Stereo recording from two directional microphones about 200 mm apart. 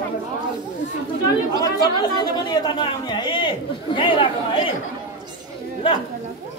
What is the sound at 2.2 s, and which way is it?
Speech, 20° left (ahead or behind).